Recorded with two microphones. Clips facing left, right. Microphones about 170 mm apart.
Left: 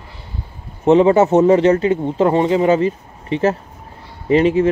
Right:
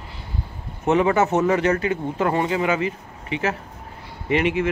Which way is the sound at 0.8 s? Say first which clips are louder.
Left 7 dB; 30° left (ahead or behind).